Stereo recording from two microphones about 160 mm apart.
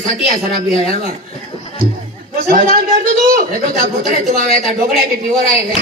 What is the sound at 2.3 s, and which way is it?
A man's voice, 55° right (ahead or behind).